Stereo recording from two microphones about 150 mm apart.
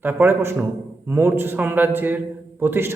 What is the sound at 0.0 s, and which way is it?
A man's voice, 15° right (ahead or behind).